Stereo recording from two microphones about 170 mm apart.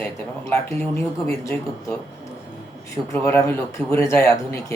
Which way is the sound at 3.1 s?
15° left (ahead or behind).